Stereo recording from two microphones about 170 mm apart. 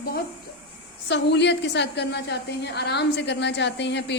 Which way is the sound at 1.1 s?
90° left.